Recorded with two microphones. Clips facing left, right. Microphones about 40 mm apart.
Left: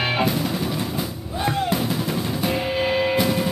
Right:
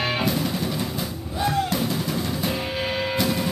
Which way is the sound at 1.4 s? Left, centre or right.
Left.